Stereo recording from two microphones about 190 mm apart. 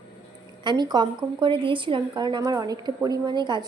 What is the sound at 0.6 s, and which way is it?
A woman's voice, 20° right (ahead or behind).